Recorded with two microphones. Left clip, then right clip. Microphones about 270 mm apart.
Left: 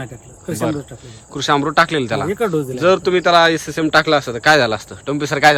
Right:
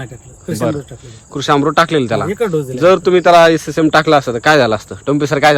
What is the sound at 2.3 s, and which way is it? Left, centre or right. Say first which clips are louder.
Speech: right 3 dB; centre.